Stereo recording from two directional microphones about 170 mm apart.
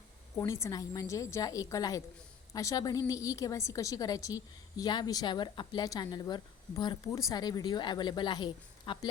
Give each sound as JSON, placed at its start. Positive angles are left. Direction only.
{"t": 0.3, "sound": "a woman's voice", "side_deg": 15}